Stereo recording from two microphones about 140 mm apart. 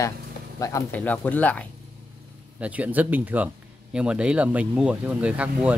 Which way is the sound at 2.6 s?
10° right (ahead or behind).